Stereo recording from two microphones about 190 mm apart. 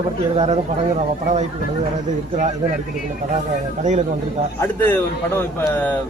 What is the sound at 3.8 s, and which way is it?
Speech, 40° right (ahead or behind).